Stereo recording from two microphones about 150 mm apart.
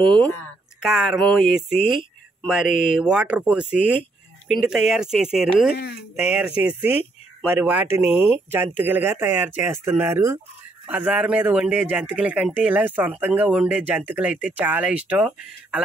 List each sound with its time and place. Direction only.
0.0 s speech: 5° left (ahead or behind)
0.8 s speech: 5° right (ahead or behind)
2.7 s speech: 60° left (ahead or behind)
3.0 s speech: 5° right (ahead or behind)